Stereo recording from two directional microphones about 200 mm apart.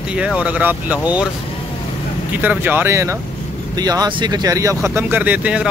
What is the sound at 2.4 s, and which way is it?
Speech, 10° right (ahead or behind).